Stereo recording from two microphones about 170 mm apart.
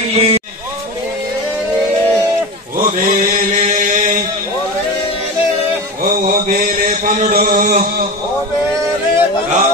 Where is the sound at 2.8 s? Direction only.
50° right (ahead or behind).